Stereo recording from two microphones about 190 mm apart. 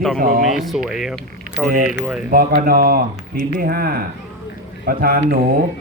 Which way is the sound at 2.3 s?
50° right (ahead or behind).